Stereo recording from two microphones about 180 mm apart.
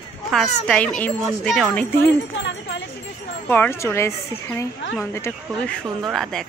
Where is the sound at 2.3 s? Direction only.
80° left.